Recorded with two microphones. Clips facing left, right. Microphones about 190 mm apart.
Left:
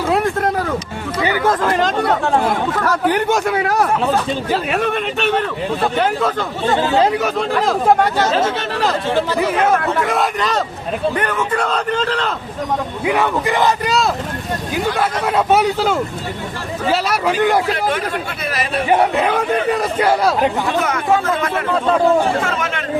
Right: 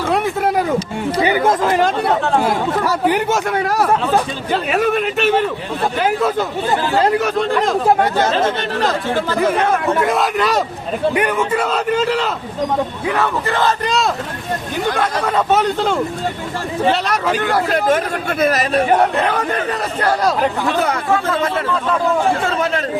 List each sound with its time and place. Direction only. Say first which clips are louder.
0.1 s a sound: even; centre (ahead or behind)
1.2 s chatter: right 1 dB; 25° right (ahead or behind)
1.6 s a man's voice: right 1 dB; 10° right (ahead or behind)
6.7 s speech: left 2 dB; 20° left (ahead or behind)
7.0 s a man's voice: right 1 dB; centre (ahead or behind)
9.6 s a man's voice: even; 5° left (ahead or behind)
13.1 s a man's voice: left 4 dB; 15° left (ahead or behind)
14.9 s a man's voice: even; 10° left (ahead or behind)
17.8 s speech: right 3 dB; 45° right (ahead or behind)
18.9 s a man's voice: left 5 dB; 5° left (ahead or behind)
20.7 s speech: even; 35° right (ahead or behind)